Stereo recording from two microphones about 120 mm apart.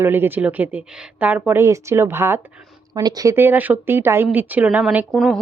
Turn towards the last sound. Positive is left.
turn(degrees=0)  # may be behind; listen again after turning